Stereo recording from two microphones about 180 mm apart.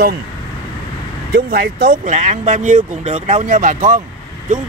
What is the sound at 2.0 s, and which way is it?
Speech, 40° right (ahead or behind).